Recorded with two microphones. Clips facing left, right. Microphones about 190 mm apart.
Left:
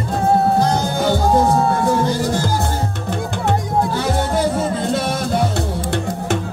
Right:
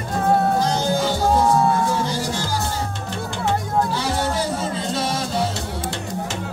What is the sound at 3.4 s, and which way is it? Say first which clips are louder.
Music: left 2 dB; 55° left (ahead or behind).